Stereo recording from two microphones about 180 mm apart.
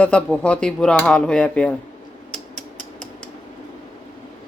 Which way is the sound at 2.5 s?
50° left (ahead or behind).